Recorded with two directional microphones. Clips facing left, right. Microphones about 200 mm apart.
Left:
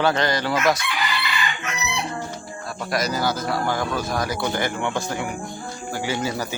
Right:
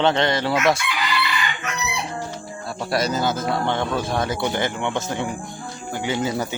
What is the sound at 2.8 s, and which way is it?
Speech, 30° right (ahead or behind).